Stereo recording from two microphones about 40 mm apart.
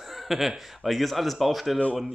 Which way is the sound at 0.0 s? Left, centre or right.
Centre.